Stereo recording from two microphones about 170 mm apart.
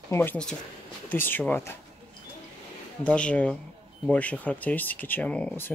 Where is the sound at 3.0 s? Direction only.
5° left (ahead or behind).